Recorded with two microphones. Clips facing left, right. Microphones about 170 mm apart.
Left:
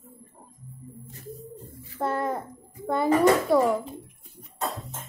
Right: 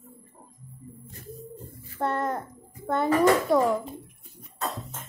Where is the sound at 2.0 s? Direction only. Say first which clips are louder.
Even; centre (ahead or behind).